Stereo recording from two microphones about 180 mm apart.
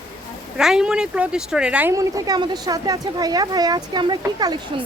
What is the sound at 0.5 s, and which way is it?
Speech, 5° right (ahead or behind).